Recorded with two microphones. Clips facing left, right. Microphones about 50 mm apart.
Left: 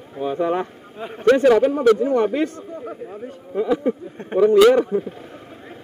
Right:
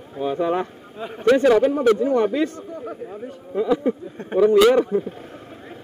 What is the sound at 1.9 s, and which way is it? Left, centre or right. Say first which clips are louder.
Speech: even; left.